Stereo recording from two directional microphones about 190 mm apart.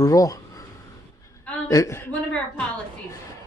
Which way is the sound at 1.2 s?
15° left (ahead or behind).